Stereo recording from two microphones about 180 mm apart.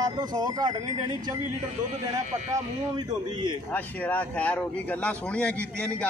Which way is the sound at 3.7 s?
10° left (ahead or behind).